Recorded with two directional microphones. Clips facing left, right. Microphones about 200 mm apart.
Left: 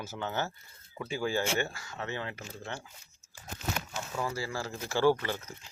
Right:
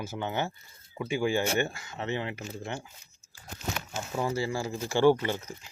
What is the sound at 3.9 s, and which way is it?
Speech, 25° right (ahead or behind).